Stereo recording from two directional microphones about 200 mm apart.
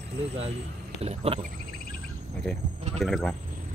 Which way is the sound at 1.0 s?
30° right (ahead or behind).